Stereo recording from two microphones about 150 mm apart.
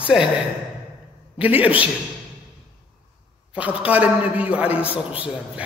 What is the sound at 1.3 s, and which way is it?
Speech, 10° right (ahead or behind).